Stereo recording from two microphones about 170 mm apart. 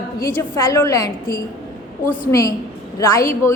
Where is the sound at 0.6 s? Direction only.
20° left (ahead or behind).